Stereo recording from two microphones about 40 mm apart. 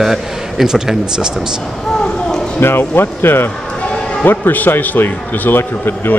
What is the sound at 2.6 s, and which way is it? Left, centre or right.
Speech, left.